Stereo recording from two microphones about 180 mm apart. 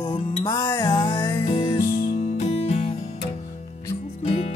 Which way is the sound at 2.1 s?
35° left (ahead or behind).